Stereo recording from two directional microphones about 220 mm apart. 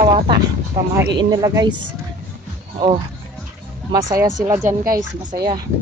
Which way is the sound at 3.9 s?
20° right (ahead or behind).